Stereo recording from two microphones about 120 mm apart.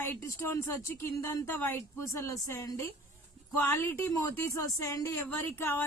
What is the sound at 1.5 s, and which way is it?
Speech, 15° left (ahead or behind).